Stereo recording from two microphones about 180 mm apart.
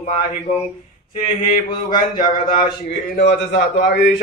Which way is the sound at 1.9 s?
25° left (ahead or behind).